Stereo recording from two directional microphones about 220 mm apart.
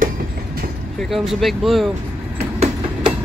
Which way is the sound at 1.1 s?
Centre (ahead or behind).